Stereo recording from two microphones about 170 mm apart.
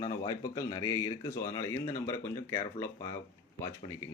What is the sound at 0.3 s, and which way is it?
A man's voice, 20° left (ahead or behind).